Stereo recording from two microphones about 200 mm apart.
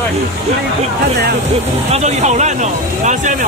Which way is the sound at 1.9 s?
35° right (ahead or behind).